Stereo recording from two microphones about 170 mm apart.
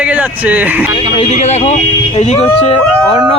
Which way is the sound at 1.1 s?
40° left (ahead or behind).